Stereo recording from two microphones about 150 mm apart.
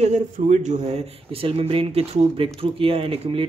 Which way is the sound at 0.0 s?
50° right (ahead or behind).